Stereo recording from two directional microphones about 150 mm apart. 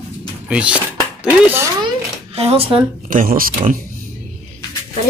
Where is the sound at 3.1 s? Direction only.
70° right (ahead or behind).